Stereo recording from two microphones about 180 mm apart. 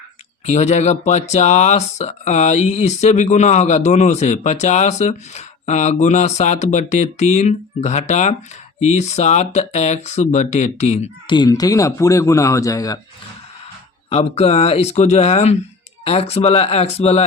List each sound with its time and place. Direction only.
0.4 s speech: 40° left (ahead or behind)
11.3 s speech: 20° left (ahead or behind)
14.1 s speech: 35° left (ahead or behind)